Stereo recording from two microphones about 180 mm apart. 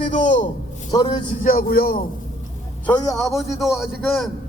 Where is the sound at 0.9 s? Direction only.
25° left (ahead or behind).